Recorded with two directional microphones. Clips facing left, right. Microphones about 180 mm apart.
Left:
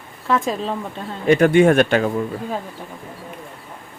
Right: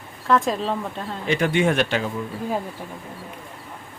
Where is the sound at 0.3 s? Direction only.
Centre (ahead or behind).